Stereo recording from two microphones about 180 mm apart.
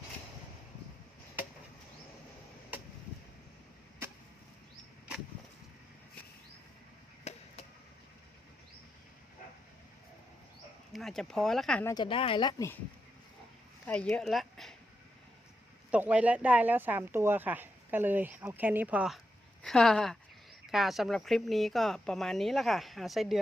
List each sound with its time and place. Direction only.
7.3 s chop: 35° left (ahead or behind)
10.9 s speech: centre (ahead or behind)
11.9 s speech: 25° left (ahead or behind)
13.8 s a woman's voice: 5° left (ahead or behind)
15.9 s speech: 5° right (ahead or behind)